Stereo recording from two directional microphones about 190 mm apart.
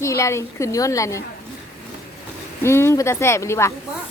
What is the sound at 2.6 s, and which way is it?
A woman's voice, 15° left (ahead or behind).